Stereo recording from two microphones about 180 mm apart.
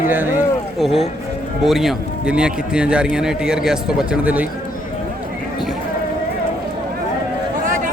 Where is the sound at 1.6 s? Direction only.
Centre (ahead or behind).